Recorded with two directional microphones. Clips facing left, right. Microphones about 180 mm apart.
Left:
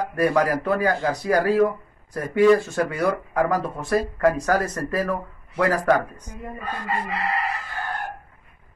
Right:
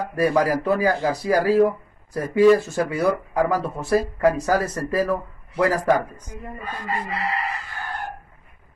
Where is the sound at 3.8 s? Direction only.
35° right (ahead or behind).